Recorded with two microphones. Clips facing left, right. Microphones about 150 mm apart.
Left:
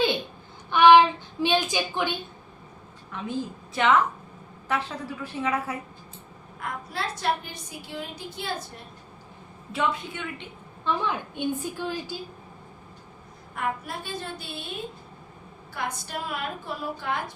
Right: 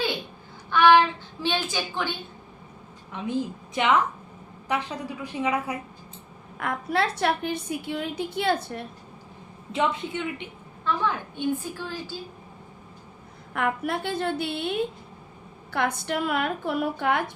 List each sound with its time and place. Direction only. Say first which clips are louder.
0.7 s a sound: left 2 dB; 15° left (ahead or behind)
3.1 s a man's voice: right 3 dB; 20° right (ahead or behind)
6.6 s a woman's voice: right 7 dB; 65° right (ahead or behind)
9.7 s a man's voice: right 2 dB; 20° right (ahead or behind)
10.8 s a woman's voice: right 1 dB; 15° left (ahead or behind)
13.5 s a woman's voice: right 5 dB; 65° right (ahead or behind)